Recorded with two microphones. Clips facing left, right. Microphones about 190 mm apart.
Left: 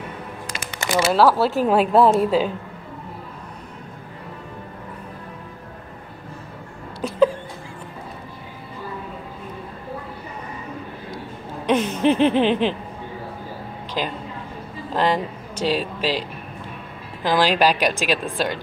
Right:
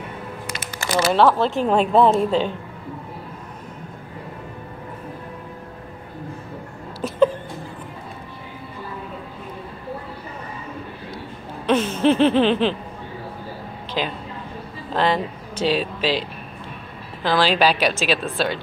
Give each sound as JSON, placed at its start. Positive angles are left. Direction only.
{"t": 1.1, "sound": "a woman's voice", "side_deg": 5}
{"t": 7.0, "sound": "a sound", "side_deg": 0}
{"t": 11.6, "sound": "a sound", "side_deg": 15}
{"t": 15.0, "sound": "speech", "side_deg": 10}
{"t": 15.6, "sound": "speech", "side_deg": 45}
{"t": 16.0, "sound": "speech", "side_deg": 10}